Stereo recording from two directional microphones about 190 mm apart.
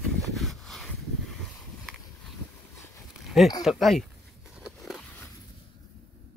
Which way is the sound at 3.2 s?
Centre (ahead or behind).